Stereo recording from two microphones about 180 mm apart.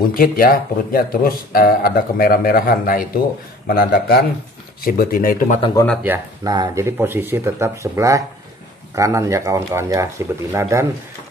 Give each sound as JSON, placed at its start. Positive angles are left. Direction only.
{"t": 0.1, "sound": "a man's voice", "side_deg": 55}
{"t": 6.0, "sound": "speech", "side_deg": -10}